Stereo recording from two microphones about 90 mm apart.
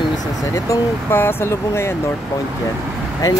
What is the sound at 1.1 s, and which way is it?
Speech, 25° left (ahead or behind).